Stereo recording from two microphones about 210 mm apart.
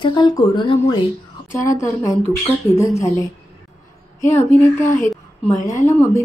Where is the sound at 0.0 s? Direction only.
20° left (ahead or behind).